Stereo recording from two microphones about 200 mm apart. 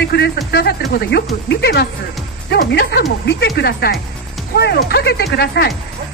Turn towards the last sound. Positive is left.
turn(degrees=55)  # may be behind; listen again after turning